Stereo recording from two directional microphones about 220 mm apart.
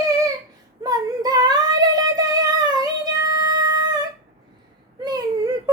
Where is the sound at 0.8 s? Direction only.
15° right (ahead or behind).